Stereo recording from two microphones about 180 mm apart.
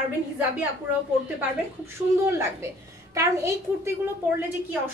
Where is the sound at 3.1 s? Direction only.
15° right (ahead or behind).